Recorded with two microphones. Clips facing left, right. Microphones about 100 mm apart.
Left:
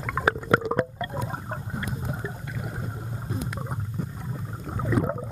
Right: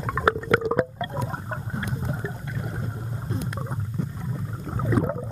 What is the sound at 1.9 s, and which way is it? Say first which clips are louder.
Water: right 2 dB; centre (ahead or behind).